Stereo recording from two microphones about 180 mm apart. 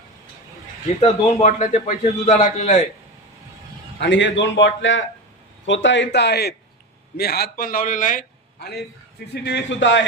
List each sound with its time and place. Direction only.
1.0 s a man's voice: 40° left (ahead or behind)
4.0 s a man's voice: 80° left; by 8.2 s 45° left (ahead or behind)
8.5 s a man's voice: 65° left (ahead or behind); by 10.0 s 90° left